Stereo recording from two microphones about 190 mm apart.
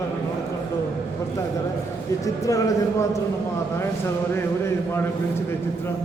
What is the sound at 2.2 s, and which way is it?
Speech, 15° left (ahead or behind).